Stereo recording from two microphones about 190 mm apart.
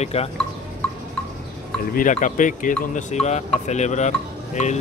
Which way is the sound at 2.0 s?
40° left (ahead or behind).